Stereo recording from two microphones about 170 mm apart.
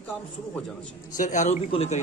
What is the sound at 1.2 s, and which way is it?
Speech, 50° left (ahead or behind).